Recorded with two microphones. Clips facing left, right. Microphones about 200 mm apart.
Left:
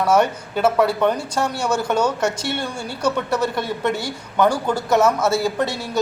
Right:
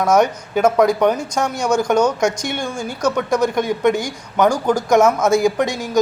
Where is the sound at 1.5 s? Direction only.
5° left (ahead or behind).